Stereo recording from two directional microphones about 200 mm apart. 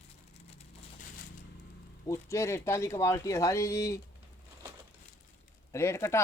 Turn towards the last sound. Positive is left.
turn(degrees=15)  # may be behind; listen again after turning